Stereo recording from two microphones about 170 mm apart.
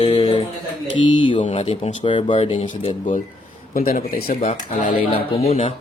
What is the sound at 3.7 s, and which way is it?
Speech, 55° left (ahead or behind).